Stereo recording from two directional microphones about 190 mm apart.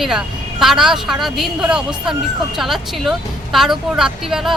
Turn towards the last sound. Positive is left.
turn(degrees=0)  # may be behind; listen again after turning